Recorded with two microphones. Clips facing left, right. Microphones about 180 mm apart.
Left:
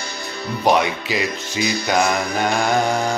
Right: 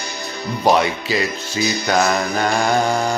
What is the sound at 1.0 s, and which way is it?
Music, 15° left (ahead or behind).